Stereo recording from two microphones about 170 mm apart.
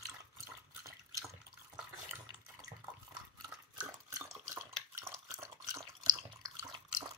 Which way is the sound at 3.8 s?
15° right (ahead or behind).